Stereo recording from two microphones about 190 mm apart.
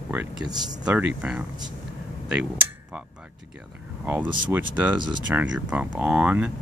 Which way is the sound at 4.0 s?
10° right (ahead or behind).